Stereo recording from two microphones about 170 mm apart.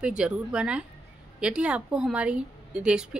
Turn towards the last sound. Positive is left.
turn(degrees=-5)  # may be behind; listen again after turning